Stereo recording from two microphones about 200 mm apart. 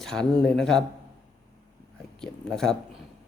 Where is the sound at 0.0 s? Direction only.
5° left (ahead or behind).